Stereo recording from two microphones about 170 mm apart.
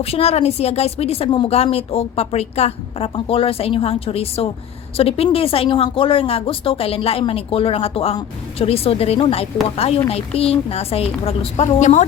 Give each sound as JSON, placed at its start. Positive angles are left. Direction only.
{"t": 0.0, "sound": "speech", "side_deg": 35}